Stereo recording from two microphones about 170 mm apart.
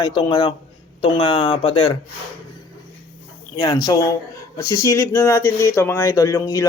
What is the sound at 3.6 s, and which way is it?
Speech, 20° left (ahead or behind).